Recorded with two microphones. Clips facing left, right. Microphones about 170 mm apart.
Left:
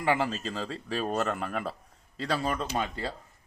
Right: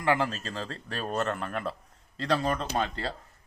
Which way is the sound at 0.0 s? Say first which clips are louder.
Even; 5° left (ahead or behind).